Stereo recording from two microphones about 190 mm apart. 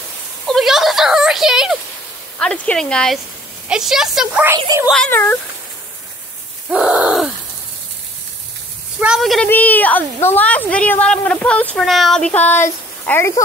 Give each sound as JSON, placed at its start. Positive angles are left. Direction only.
{"t": 0.5, "sound": "a sound", "side_deg": 0}
{"t": 2.3, "sound": "speech", "side_deg": 5}
{"t": 4.6, "sound": "speech", "side_deg": -20}
{"t": 4.8, "sound": "speech", "side_deg": 5}
{"t": 6.7, "sound": "groan", "side_deg": -5}
{"t": 9.0, "sound": "speech", "side_deg": 0}